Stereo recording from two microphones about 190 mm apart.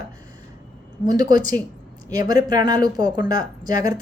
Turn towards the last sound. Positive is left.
turn(degrees=-20)  # may be behind; listen again after turning